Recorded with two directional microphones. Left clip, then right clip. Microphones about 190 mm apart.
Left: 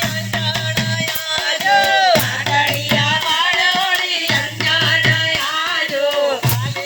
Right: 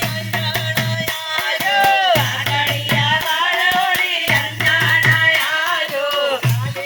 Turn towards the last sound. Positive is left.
turn(degrees=30)  # may be behind; listen again after turning